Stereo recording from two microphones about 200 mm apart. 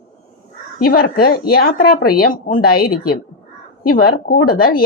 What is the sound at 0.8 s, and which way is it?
Speech, 50° left (ahead or behind).